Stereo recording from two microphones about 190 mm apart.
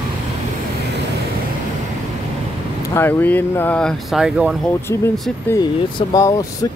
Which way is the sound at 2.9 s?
10° left (ahead or behind).